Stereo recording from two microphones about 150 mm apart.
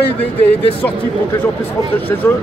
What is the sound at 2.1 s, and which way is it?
Speech, 20° left (ahead or behind).